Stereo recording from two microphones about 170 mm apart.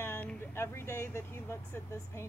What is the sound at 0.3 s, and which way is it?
Speech, 15° left (ahead or behind).